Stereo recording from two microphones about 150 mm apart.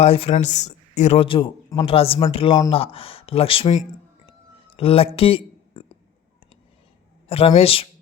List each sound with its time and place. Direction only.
0.0 s speech: 40° left (ahead or behind)
7.3 s speech: 40° left (ahead or behind)